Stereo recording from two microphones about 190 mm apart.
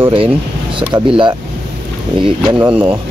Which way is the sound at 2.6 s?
5° right (ahead or behind).